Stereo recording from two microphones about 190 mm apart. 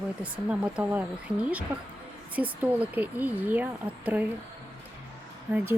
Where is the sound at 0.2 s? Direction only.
5° right (ahead or behind).